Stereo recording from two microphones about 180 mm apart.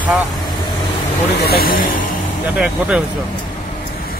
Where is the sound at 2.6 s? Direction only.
5° right (ahead or behind).